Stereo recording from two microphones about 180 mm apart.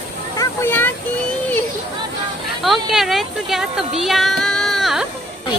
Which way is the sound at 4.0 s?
Centre (ahead or behind).